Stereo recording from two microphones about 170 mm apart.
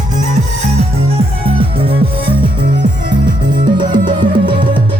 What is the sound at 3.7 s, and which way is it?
Music, 25° right (ahead or behind).